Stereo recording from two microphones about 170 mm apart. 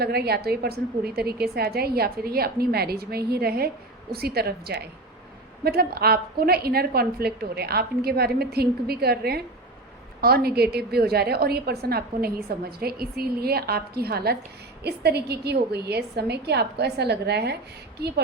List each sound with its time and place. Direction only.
0.0 s a woman's voice: 70° right (ahead or behind)